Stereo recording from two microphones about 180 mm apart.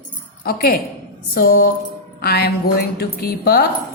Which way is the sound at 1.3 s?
55° left (ahead or behind).